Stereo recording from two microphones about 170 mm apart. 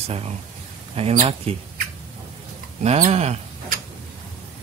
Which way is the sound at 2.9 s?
45° right (ahead or behind).